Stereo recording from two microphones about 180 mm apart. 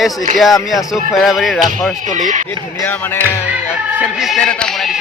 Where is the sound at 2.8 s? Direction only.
10° left (ahead or behind).